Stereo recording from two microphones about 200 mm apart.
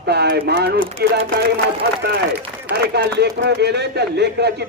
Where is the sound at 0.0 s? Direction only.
55° right (ahead or behind).